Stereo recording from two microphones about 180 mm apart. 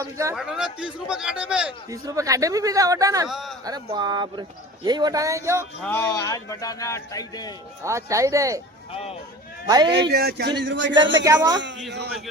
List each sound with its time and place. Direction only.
0.0 s speech: 15° right (ahead or behind)
0.3 s speech: 5° right (ahead or behind)
1.9 s speech: 20° right (ahead or behind)
3.2 s speech: centre (ahead or behind)
3.6 s speech: 20° right (ahead or behind)
5.8 s a man's voice: 10° left (ahead or behind)
7.9 s speech: 15° right (ahead or behind)
8.9 s speech: 35° left (ahead or behind)
9.6 s speech: 20° right (ahead or behind)
10.1 s speech: 65° right (ahead or behind)
10.6 s speech: 90° right
11.9 s speech: 70° right (ahead or behind)